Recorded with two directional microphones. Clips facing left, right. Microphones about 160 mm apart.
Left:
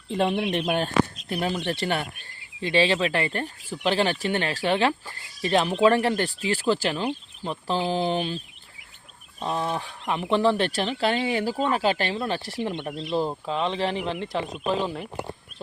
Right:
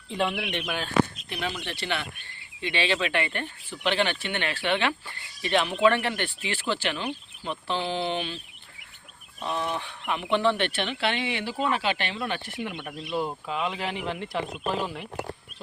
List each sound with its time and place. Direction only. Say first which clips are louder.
0.1 s speech: left 5 dB; 40° left (ahead or behind)
9.4 s speech: left 2 dB; 30° left (ahead or behind)